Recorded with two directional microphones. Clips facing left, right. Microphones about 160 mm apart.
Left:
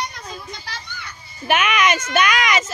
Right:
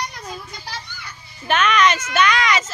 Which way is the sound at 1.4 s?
10° left (ahead or behind).